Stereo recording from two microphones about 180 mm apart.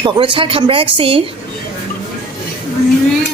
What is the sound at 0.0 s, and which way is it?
Speech, 30° right (ahead or behind).